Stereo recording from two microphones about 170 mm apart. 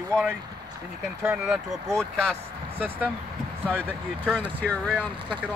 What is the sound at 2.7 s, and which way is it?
Speech, 10° right (ahead or behind).